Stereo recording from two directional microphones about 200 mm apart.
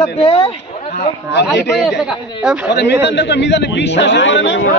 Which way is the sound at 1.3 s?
55° left (ahead or behind).